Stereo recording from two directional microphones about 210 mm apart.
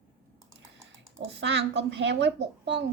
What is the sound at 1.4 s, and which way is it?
Speech, 55° right (ahead or behind).